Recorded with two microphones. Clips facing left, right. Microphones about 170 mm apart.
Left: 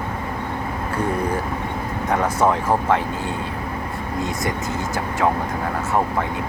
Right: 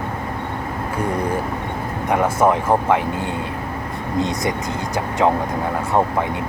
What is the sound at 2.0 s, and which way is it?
Speech, 10° right (ahead or behind).